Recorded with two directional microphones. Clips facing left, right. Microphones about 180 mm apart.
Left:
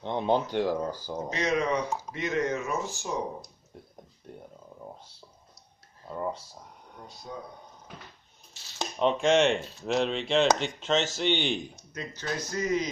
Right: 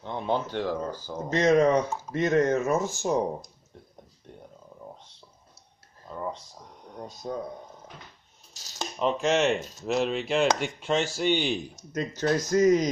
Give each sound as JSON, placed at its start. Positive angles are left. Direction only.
{"t": 0.0, "sound": "speech", "side_deg": 20}
{"t": 1.3, "sound": "speech", "side_deg": -45}
{"t": 6.0, "sound": "speech", "side_deg": 10}
{"t": 7.0, "sound": "speech", "side_deg": -45}
{"t": 9.0, "sound": "speech", "side_deg": -5}
{"t": 9.6, "sound": "speech", "side_deg": -40}
{"t": 9.8, "sound": "speech", "side_deg": -5}
{"t": 11.7, "sound": "speech", "side_deg": -45}